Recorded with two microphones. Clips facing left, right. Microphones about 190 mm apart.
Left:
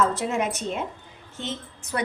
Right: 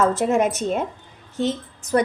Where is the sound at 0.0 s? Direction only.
50° right (ahead or behind).